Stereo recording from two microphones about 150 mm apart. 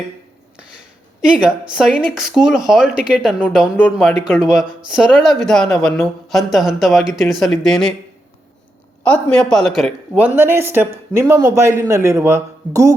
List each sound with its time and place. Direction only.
1.2 s speech: 5° right (ahead or behind)
9.0 s speech: 5° left (ahead or behind)
10.2 s a man's voice: 10° right (ahead or behind)